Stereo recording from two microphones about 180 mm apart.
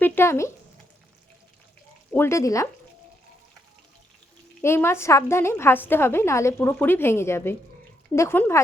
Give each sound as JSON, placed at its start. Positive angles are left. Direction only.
{"t": 0.0, "sound": "a sound", "side_deg": 15}
{"t": 2.1, "sound": "a woman's voice", "side_deg": 15}
{"t": 4.6, "sound": "a woman's voice", "side_deg": 15}